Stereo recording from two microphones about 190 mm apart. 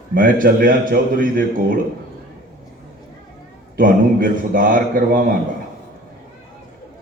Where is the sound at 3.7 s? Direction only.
45° right (ahead or behind).